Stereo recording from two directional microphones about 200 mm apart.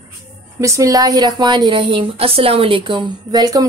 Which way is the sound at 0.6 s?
15° right (ahead or behind).